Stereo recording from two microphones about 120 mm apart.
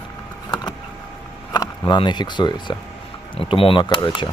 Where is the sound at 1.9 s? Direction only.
40° left (ahead or behind).